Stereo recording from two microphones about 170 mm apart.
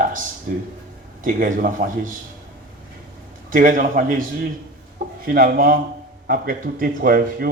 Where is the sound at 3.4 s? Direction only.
50° right (ahead or behind).